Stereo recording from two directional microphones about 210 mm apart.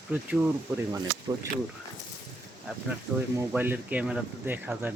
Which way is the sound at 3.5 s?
5° right (ahead or behind).